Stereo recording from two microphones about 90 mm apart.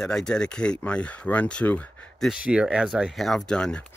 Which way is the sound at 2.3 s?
10° right (ahead or behind).